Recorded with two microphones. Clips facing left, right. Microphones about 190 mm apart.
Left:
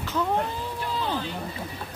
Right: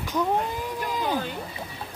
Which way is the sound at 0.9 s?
15° right (ahead or behind).